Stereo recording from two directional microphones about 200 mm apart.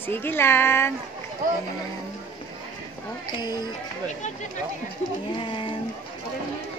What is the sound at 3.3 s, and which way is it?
Speech, 20° left (ahead or behind).